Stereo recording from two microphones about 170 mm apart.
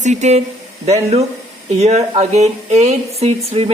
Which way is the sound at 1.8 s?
40° right (ahead or behind).